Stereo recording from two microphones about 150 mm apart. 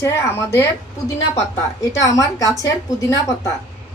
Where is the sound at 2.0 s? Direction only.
20° left (ahead or behind).